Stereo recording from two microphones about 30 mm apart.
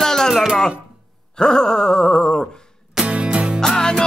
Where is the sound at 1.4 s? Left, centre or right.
Left.